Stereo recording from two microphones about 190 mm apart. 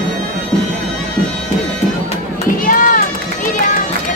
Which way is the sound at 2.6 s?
45° left (ahead or behind).